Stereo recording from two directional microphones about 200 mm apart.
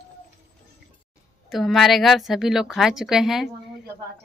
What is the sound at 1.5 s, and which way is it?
A woman's voice, centre (ahead or behind).